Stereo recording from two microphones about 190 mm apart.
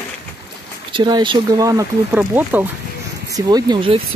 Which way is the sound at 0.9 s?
25° right (ahead or behind).